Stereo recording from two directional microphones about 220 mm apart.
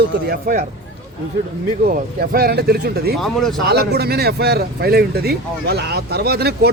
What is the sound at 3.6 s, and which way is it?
A man's voice, 45° right (ahead or behind).